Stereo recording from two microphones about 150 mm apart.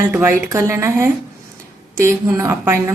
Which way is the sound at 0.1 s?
15° right (ahead or behind).